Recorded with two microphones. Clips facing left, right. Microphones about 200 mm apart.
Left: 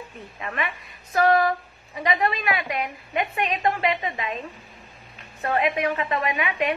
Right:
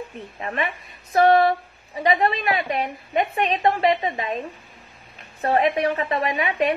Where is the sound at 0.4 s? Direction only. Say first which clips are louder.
Right 3 dB; 25° right (ahead or behind).